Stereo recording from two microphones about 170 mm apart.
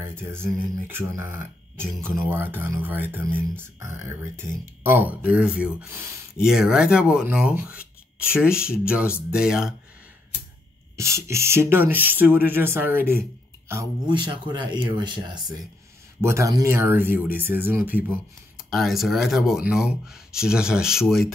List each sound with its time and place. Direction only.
0.0 s speech: 15° right (ahead or behind)
6.4 s speech: 5° right (ahead or behind)
11.0 s speech: 15° right (ahead or behind)
14.0 s speech: 30° right (ahead or behind); by 21.0 s 5° right (ahead or behind)